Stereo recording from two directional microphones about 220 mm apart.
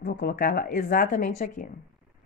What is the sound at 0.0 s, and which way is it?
A woman's voice, 40° left (ahead or behind).